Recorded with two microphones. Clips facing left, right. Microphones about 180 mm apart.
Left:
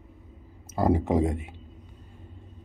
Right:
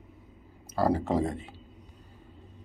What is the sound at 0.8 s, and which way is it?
Speech, 20° left (ahead or behind).